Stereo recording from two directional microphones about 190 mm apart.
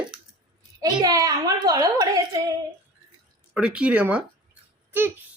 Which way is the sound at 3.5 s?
5° right (ahead or behind).